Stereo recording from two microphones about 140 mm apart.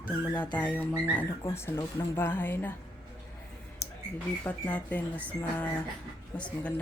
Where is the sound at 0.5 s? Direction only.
10° left (ahead or behind).